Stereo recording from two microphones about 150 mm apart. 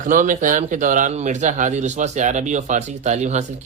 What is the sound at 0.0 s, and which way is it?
Speech, 60° right (ahead or behind).